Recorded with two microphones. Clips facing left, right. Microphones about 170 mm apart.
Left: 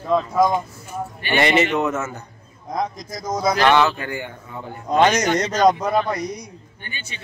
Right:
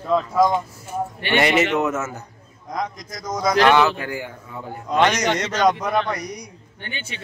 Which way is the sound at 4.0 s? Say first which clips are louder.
Even; 5° right (ahead or behind).